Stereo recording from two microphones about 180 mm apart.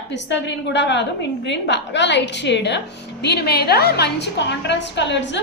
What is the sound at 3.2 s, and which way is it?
A woman's voice, 65° left (ahead or behind).